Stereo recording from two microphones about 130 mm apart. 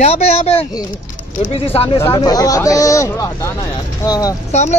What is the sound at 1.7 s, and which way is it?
Speech, 45° left (ahead or behind).